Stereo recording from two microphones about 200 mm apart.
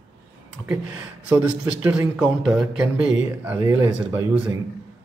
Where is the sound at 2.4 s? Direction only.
Centre (ahead or behind).